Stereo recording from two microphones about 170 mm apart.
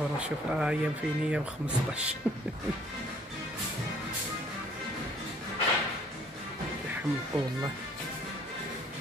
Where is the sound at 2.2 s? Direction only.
10° right (ahead or behind).